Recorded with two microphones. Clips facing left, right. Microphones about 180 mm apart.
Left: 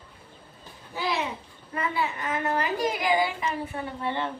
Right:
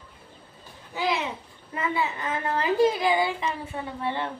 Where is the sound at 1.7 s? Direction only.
25° right (ahead or behind).